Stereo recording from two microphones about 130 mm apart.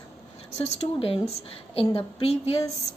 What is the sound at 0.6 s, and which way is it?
A woman's voice, 55° left (ahead or behind).